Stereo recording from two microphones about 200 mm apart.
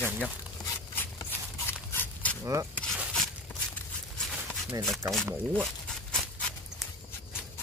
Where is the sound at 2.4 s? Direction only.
15° right (ahead or behind).